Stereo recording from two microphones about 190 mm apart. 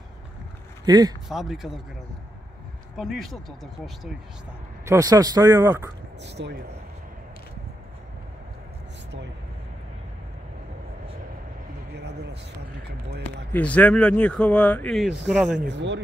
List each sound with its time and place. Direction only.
0.8 s speech: 20° right (ahead or behind)
1.3 s speech: centre (ahead or behind)
3.0 s speech: centre (ahead or behind)
4.8 s speech: 20° right (ahead or behind)
6.2 s speech: 65° right (ahead or behind)
11.9 s a sound: 60° right (ahead or behind)
13.5 s speech: 5° left (ahead or behind)
15.7 s speech: 70° right (ahead or behind)